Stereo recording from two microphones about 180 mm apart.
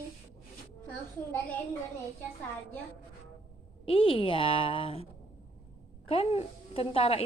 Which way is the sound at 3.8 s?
30° left (ahead or behind).